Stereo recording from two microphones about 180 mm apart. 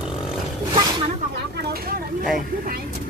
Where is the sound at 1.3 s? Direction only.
60° right (ahead or behind).